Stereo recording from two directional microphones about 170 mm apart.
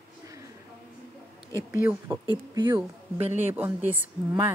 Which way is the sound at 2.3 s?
25° right (ahead or behind).